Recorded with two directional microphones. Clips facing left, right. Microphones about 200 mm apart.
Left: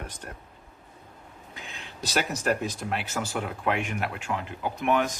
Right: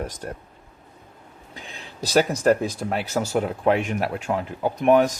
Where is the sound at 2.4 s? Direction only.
40° right (ahead or behind).